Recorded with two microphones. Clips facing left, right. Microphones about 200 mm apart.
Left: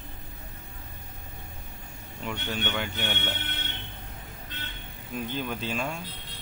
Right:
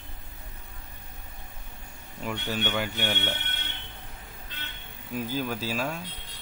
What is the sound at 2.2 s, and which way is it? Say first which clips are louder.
Speech: right 2 dB; 5° right (ahead or behind).